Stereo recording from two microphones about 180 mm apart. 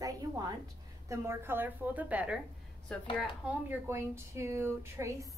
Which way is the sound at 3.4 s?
10° right (ahead or behind).